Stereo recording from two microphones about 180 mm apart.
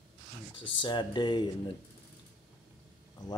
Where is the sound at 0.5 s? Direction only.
25° left (ahead or behind).